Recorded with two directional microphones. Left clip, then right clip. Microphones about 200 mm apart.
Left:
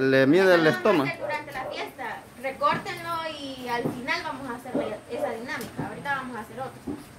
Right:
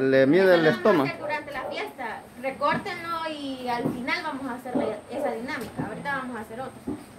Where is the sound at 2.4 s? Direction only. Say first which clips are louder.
Even; 20° right (ahead or behind).